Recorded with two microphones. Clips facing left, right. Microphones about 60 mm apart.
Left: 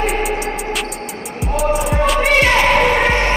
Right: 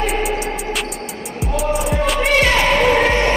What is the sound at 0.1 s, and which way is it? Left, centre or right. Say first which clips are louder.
Music: left 1 dB; centre.